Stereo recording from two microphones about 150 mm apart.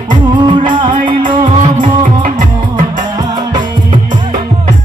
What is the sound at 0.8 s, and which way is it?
Music, 60° right (ahead or behind).